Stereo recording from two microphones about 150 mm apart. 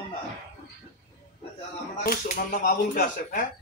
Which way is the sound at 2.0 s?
65° left (ahead or behind).